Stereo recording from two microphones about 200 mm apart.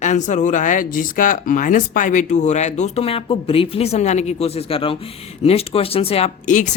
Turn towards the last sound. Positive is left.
turn(degrees=40)  # may be behind; listen again after turning